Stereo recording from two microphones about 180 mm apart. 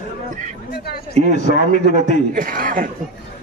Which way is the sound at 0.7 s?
60° left (ahead or behind).